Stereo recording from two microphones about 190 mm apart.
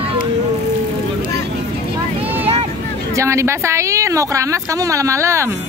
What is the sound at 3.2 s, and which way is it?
A woman's voice, 15° right (ahead or behind).